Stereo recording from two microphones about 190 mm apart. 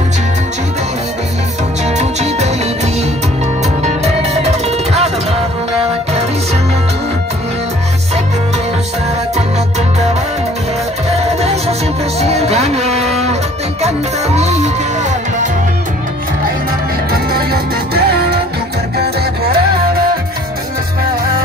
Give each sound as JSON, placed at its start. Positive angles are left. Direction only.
{"t": 2.0, "sound": "music", "side_deg": -35}
{"t": 3.8, "sound": "music", "side_deg": -35}
{"t": 11.1, "sound": "music", "side_deg": -35}
{"t": 14.3, "sound": "music", "side_deg": -35}
{"t": 17.1, "sound": "music", "side_deg": -55}